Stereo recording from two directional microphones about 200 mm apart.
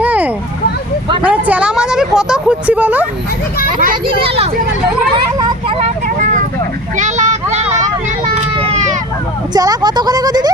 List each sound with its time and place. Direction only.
0.0 s a sound: 10° right (ahead or behind)
1.2 s speech: 5° right (ahead or behind)
4.0 s a child's voice: 30° right (ahead or behind)
5.1 s vehicle: 25° right (ahead or behind)
6.1 s vehicle: 40° right (ahead or behind)
9.5 s a sound: 20° right (ahead or behind)